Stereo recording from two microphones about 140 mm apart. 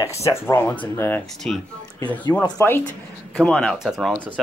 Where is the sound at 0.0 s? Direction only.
20° left (ahead or behind).